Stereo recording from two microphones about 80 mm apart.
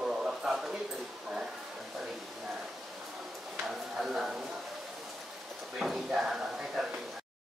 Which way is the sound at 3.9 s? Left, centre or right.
Centre.